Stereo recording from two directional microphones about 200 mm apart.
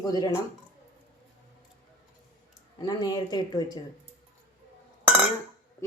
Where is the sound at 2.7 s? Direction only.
20° left (ahead or behind).